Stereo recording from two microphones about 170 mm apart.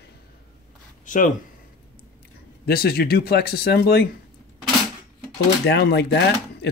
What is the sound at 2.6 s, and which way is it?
Speech, 65° left (ahead or behind).